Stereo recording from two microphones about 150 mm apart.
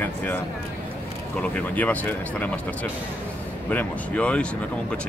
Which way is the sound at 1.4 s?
10° left (ahead or behind).